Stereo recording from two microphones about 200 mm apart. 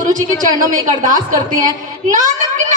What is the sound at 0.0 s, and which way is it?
A woman's voice, 40° right (ahead or behind).